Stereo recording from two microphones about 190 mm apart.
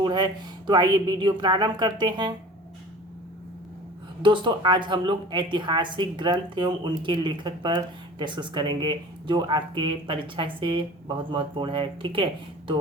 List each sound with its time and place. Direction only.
0.0 s a sound: 25° right (ahead or behind)
0.7 s speech: 25° right (ahead or behind)
4.2 s speech: 25° right (ahead or behind)